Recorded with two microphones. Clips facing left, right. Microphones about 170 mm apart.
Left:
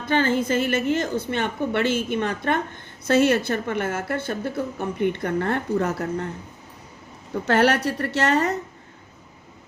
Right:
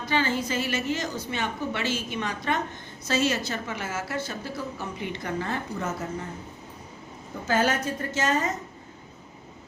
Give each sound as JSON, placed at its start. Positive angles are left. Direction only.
{"t": 0.0, "sound": "a woman's voice", "side_deg": 55}
{"t": 7.4, "sound": "a woman's voice", "side_deg": 70}